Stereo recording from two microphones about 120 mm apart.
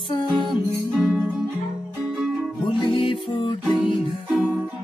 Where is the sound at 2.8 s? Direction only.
45° left (ahead or behind).